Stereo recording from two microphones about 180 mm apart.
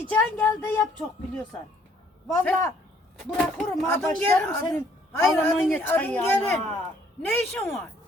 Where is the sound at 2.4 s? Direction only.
15° left (ahead or behind).